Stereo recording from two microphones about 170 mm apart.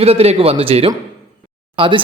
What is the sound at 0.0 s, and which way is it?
A man's voice, 35° right (ahead or behind).